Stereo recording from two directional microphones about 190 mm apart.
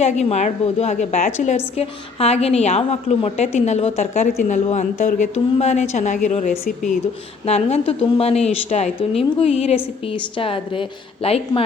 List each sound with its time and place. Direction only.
0.0 s a woman's voice: 35° left (ahead or behind)